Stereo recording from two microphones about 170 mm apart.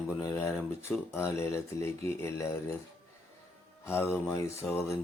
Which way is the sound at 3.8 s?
15° left (ahead or behind).